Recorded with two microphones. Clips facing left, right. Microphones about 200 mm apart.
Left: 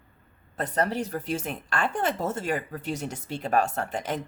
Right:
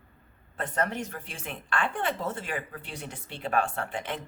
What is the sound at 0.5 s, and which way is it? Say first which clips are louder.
A woman's voice: left 3 dB; 35° left (ahead or behind).